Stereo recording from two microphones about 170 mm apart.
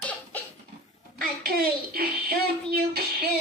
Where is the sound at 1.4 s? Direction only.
60° right (ahead or behind).